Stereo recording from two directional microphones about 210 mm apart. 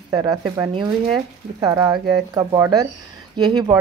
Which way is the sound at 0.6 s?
15° right (ahead or behind).